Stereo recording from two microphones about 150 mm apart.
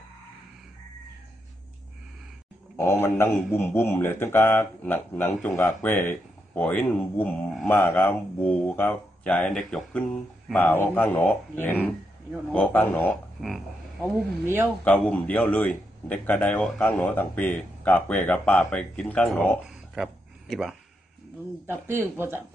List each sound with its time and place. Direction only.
2.8 s speech: 15° left (ahead or behind)
14.4 s a man's voice: 15° right (ahead or behind)
14.9 s speech: 10° left (ahead or behind)
19.6 s a sound: 5° right (ahead or behind)
21.6 s a man's voice: 15° right (ahead or behind)